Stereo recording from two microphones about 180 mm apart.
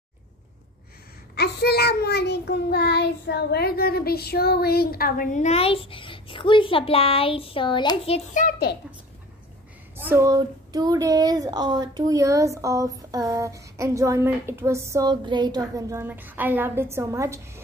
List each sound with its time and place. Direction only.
1.3 s child singing: 65° left (ahead or behind); by 8.5 s 40° left (ahead or behind)
9.9 s speech: 10° right (ahead or behind)